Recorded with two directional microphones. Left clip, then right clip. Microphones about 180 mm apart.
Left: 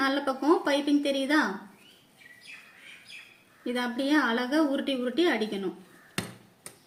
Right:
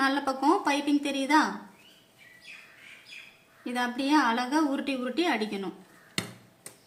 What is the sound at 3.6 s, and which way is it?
Speech, 35° right (ahead or behind).